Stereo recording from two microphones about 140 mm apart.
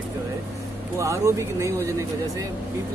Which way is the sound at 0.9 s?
20° right (ahead or behind).